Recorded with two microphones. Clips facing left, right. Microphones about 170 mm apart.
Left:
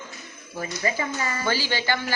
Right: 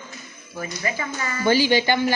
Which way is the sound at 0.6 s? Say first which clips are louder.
Left 1 dB; 30° left (ahead or behind).